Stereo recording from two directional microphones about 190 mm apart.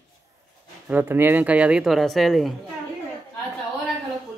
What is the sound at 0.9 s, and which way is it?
Speech, 10° right (ahead or behind).